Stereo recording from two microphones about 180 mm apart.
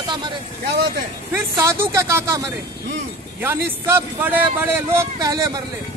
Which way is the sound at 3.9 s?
10° right (ahead or behind).